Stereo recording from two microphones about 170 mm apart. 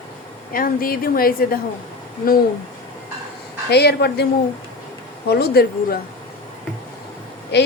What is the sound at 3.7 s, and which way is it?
Speech, 75° left (ahead or behind).